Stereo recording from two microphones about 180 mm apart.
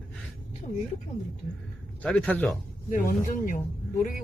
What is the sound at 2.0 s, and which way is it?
Speech, 5° left (ahead or behind).